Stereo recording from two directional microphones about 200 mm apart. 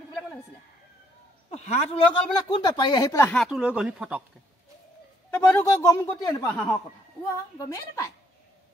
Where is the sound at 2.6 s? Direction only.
20° left (ahead or behind).